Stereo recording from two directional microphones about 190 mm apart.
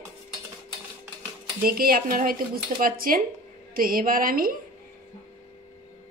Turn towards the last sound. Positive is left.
turn(degrees=-50)  # may be behind; listen again after turning